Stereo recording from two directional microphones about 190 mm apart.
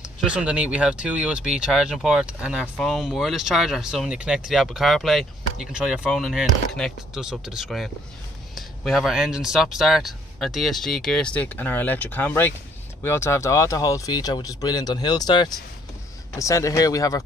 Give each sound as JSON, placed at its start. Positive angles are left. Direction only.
{"t": 0.0, "sound": "speech", "side_deg": -5}